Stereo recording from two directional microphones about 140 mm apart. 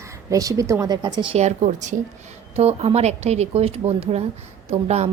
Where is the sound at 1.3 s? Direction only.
55° right (ahead or behind).